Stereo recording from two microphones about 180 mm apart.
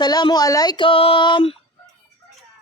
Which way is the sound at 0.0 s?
25° left (ahead or behind).